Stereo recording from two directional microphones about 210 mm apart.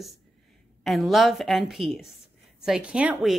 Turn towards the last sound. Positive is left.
turn(degrees=-5)  # may be behind; listen again after turning